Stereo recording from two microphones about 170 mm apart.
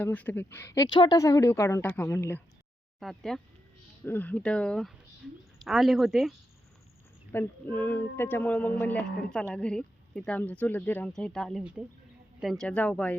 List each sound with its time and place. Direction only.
0.0 s speech: 10° left (ahead or behind)
3.0 s speech: centre (ahead or behind)
7.3 s speech: 10° left (ahead or behind)